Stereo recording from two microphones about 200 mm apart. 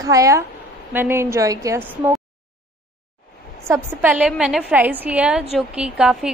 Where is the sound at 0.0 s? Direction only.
15° right (ahead or behind).